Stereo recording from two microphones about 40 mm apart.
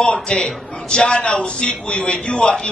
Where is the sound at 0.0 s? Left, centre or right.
Left.